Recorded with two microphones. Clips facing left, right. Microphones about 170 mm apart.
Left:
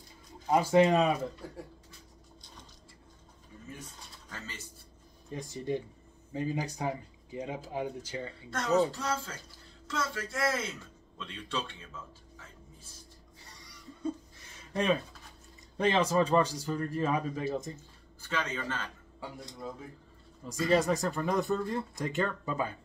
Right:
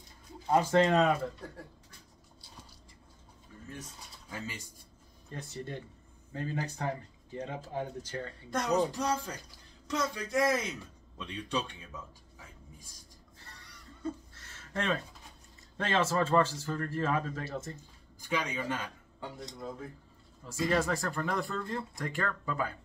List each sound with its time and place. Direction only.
0.5 s speech: 10° left (ahead or behind)
4.3 s speech: 10° right (ahead or behind)
5.3 s speech: 15° left (ahead or behind)
8.5 s a man's voice: 15° right (ahead or behind)
14.0 s a sound: 15° left (ahead or behind)
15.8 s speech: 15° left (ahead or behind)
18.2 s speech: 15° right (ahead or behind)
20.7 s speech: 20° left (ahead or behind)